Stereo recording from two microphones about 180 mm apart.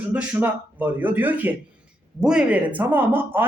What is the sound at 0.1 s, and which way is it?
A man's voice, 5° right (ahead or behind).